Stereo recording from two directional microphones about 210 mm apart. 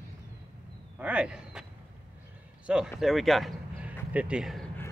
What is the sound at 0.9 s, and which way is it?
Speech, 5° right (ahead or behind).